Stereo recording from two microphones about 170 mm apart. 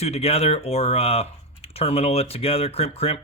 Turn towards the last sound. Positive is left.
turn(degrees=35)  # may be behind; listen again after turning